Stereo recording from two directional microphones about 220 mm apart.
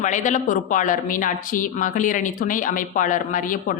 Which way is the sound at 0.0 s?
35° left (ahead or behind).